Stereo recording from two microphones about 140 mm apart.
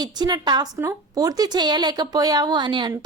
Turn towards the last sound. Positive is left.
turn(degrees=-35)  # may be behind; listen again after turning